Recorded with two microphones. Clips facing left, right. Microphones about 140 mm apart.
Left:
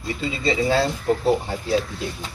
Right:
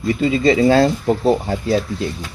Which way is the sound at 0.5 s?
80° right.